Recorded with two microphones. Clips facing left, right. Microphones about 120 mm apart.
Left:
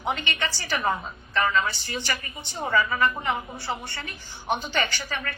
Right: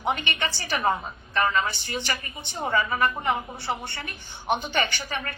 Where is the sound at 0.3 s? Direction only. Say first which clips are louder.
Even; 20° right (ahead or behind).